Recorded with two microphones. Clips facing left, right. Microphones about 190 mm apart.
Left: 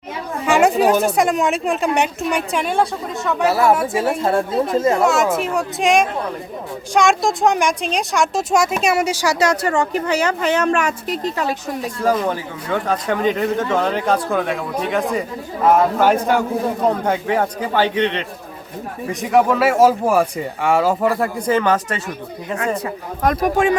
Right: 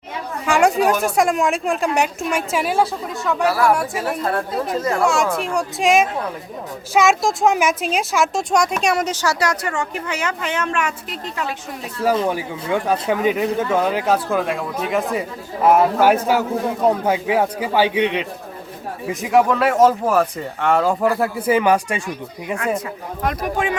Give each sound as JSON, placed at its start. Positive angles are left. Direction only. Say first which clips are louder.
{"t": 0.4, "sound": "chatter", "louder": "left 1 dB", "side_deg": 0}
{"t": 1.0, "sound": "speech", "louder": "left 1 dB", "side_deg": 0}
{"t": 3.4, "sound": "a woman's voice", "louder": "left 2 dB", "side_deg": 25}
{"t": 5.0, "sound": "a woman's voice", "louder": "left 2 dB", "side_deg": 0}
{"t": 12.3, "sound": "speech", "louder": "right 1 dB", "side_deg": -10}
{"t": 23.2, "sound": "speech", "louder": "left 6 dB", "side_deg": 45}